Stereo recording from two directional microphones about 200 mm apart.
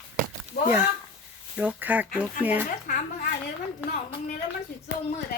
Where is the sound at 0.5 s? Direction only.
50° left (ahead or behind).